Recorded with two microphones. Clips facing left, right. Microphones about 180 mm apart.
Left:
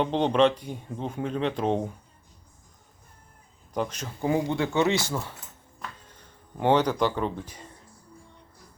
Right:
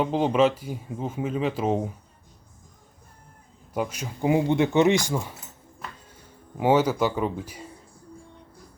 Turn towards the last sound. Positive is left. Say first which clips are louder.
# right 2 dB
turn(degrees=-10)  # may be behind; listen again after turning